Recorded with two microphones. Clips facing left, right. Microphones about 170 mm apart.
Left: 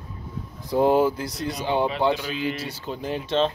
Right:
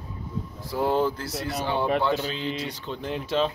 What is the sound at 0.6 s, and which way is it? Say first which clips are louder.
Speech: left 5 dB; 20° left (ahead or behind).